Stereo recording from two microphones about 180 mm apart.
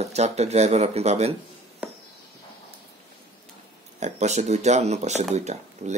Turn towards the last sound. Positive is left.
turn(degrees=-40)  # may be behind; listen again after turning